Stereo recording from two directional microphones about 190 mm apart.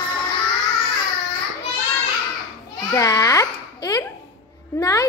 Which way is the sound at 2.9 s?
20° left (ahead or behind).